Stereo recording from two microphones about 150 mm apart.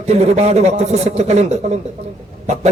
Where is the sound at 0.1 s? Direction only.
45° right (ahead or behind).